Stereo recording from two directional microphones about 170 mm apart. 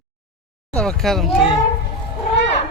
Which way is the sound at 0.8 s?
5° left (ahead or behind).